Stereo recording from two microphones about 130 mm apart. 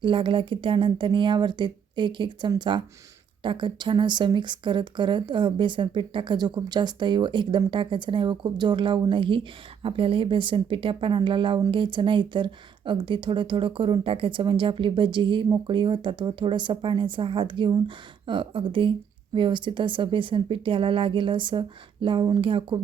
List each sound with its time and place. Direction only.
0.0 s speech: 40° right (ahead or behind)